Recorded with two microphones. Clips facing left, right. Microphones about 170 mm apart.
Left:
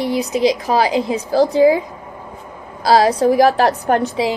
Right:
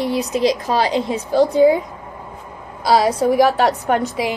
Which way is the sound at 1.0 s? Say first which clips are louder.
Left 1 dB; 35° left (ahead or behind).